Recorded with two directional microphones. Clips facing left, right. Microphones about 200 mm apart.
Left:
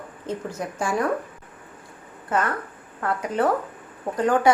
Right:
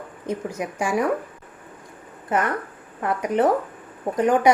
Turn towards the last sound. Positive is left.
turn(degrees=-20)  # may be behind; listen again after turning